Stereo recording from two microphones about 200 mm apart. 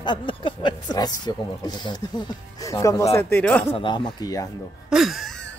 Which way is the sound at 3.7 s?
25° left (ahead or behind).